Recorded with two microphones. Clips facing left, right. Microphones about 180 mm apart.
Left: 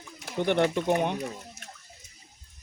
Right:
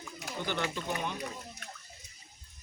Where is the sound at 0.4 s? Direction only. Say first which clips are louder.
Left 11 dB; 60° left (ahead or behind).